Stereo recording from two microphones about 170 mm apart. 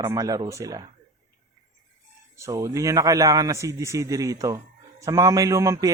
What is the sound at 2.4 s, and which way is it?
A man's voice, 20° right (ahead or behind).